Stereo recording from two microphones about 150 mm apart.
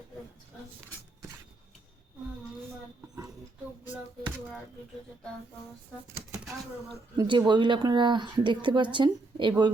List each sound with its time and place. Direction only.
7.2 s speech: 30° right (ahead or behind)